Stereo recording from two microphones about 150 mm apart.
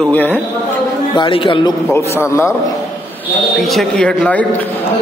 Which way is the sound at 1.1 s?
35° left (ahead or behind).